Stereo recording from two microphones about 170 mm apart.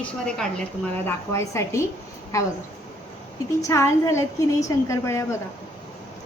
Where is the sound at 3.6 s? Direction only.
20° left (ahead or behind).